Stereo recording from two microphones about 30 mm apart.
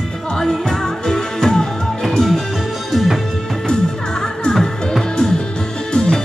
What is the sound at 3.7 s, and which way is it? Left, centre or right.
Music, left.